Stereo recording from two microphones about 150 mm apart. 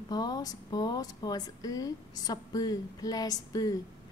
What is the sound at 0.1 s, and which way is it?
Speech, 25° left (ahead or behind).